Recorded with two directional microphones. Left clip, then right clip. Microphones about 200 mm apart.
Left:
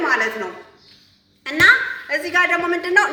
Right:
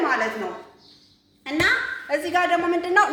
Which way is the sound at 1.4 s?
Centre (ahead or behind).